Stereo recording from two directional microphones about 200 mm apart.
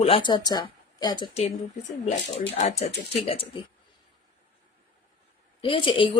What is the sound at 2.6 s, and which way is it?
Speech, 30° left (ahead or behind).